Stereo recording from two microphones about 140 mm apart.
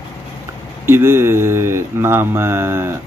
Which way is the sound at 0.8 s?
20° right (ahead or behind).